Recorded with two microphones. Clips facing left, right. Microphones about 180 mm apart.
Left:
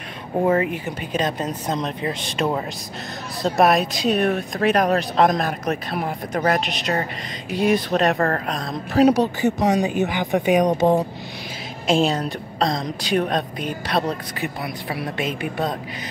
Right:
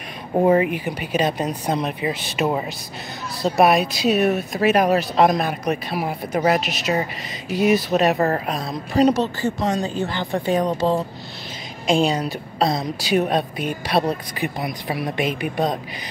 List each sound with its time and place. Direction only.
0.4 s a woman's voice: 15° right (ahead or behind)
9.0 s a woman's voice: 15° left (ahead or behind)
11.9 s a woman's voice: centre (ahead or behind); by 15.8 s 15° right (ahead or behind)